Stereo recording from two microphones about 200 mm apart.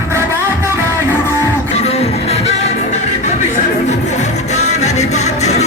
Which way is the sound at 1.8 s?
30° left (ahead or behind).